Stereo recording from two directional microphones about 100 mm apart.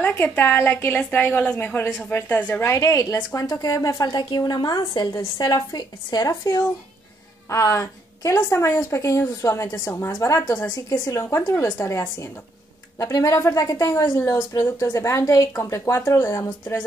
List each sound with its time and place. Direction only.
0.0 s a woman's voice: 20° left (ahead or behind)
13.0 s a woman's voice: 30° left (ahead or behind)